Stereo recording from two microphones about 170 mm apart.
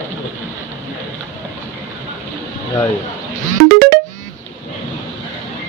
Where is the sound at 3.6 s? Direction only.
55° right (ahead or behind).